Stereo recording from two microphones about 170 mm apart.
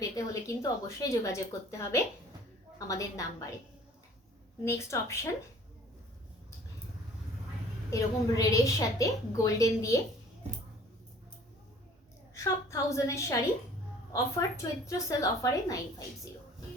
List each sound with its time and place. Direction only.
0.0 s a woman's voice: 20° left (ahead or behind)
4.6 s speech: 15° left (ahead or behind)
7.9 s a woman's voice: 20° left (ahead or behind)
12.3 s a woman's voice: 15° left (ahead or behind)